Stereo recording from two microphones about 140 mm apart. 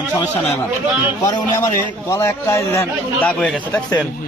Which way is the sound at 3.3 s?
5° left (ahead or behind).